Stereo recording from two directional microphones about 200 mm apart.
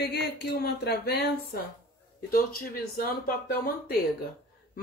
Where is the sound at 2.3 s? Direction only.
45° left (ahead or behind).